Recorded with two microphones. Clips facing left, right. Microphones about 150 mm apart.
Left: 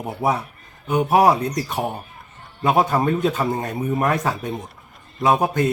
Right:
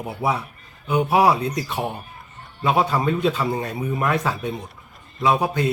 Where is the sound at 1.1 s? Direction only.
45° left (ahead or behind).